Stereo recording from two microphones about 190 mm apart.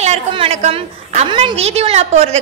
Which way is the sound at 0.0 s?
35° right (ahead or behind).